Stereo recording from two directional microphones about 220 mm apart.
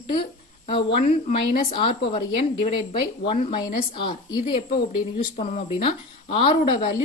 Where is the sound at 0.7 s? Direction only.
25° left (ahead or behind).